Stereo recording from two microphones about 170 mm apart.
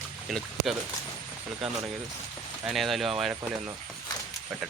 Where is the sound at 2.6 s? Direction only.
Centre (ahead or behind).